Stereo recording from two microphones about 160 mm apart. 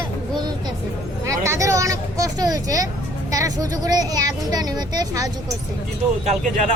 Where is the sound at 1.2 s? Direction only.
20° right (ahead or behind).